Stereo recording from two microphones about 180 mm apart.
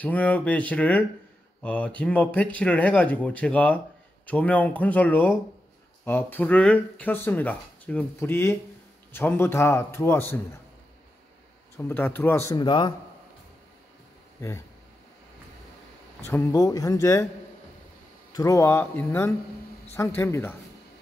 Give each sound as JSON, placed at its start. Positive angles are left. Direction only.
{"t": 0.0, "sound": "speech", "side_deg": 10}
{"t": 11.7, "sound": "speech", "side_deg": 10}
{"t": 14.4, "sound": "speech", "side_deg": 15}
{"t": 16.3, "sound": "speech", "side_deg": 15}
{"t": 18.3, "sound": "speech", "side_deg": 20}